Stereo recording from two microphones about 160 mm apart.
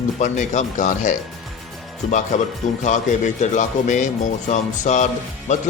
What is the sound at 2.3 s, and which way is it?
Speech, 50° left (ahead or behind).